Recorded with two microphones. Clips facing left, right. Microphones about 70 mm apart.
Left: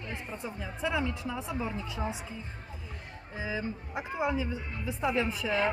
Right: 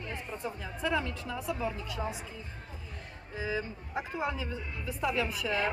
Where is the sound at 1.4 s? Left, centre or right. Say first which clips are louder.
Right 1 dB; left.